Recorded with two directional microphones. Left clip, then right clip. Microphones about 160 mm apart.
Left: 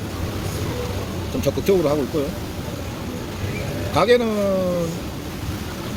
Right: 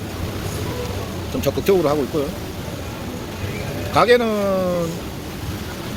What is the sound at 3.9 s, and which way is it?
Speech, 15° left (ahead or behind).